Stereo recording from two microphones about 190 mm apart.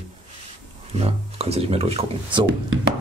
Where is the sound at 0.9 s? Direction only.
30° right (ahead or behind).